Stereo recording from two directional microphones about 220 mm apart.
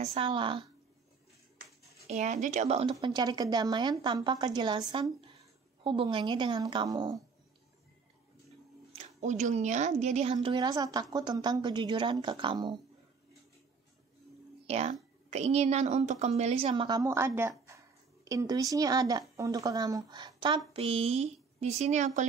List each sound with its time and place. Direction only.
0.0 s a woman's voice: 25° right (ahead or behind)
2.0 s a woman's voice: 35° right (ahead or behind); by 7.2 s 20° right (ahead or behind)
8.9 s a woman's voice: 30° right (ahead or behind)
14.7 s a woman's voice: 30° right (ahead or behind)